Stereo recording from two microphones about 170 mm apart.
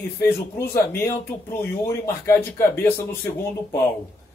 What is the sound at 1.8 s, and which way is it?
Speech, 15° left (ahead or behind).